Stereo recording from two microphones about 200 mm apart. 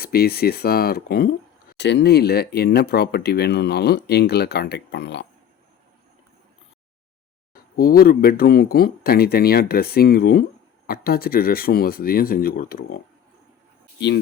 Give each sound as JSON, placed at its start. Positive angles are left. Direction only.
{"t": 0.0, "sound": "speech", "side_deg": 50}
{"t": 7.5, "sound": "speech", "side_deg": 45}